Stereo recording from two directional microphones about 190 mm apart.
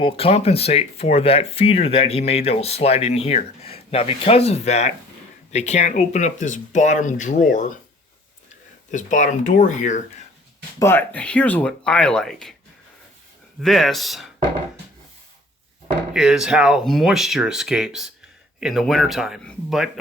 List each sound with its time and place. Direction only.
0.0 s speech: 30° left (ahead or behind)
8.9 s speech: 40° left (ahead or behind)
10.8 s speech: 10° left (ahead or behind)
13.6 s speech: centre (ahead or behind)
16.1 s speech: 5° right (ahead or behind)